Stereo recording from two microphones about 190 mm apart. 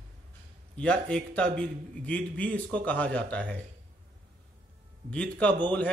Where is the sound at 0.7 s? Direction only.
5° left (ahead or behind).